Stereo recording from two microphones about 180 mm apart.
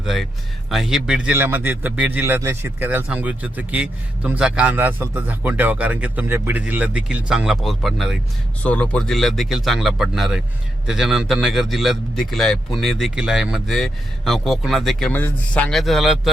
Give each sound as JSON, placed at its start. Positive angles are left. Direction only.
{"t": 0.0, "sound": "a man's voice", "side_deg": 0}